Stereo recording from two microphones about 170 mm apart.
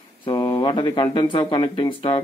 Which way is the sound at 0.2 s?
25° left (ahead or behind).